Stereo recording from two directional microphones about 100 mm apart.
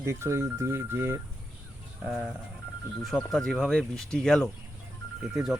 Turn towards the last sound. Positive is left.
turn(degrees=-5)  # may be behind; listen again after turning